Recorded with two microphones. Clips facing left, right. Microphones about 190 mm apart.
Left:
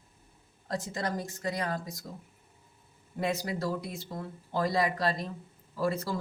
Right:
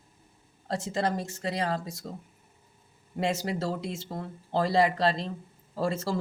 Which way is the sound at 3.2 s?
25° right (ahead or behind).